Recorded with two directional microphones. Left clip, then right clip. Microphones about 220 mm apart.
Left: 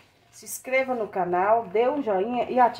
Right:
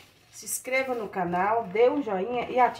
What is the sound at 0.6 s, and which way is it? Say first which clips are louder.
Speech: left 3 dB; 35° left (ahead or behind).